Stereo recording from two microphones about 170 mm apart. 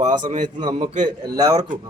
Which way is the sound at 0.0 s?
45° right (ahead or behind).